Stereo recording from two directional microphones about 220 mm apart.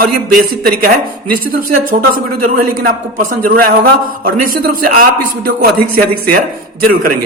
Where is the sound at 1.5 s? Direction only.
40° right (ahead or behind).